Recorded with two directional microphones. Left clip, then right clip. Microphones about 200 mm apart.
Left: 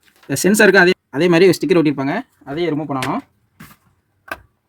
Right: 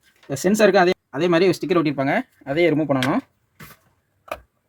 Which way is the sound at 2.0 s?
5° right (ahead or behind).